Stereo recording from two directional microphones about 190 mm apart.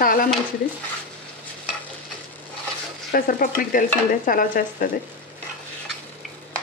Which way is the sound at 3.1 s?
50° left (ahead or behind).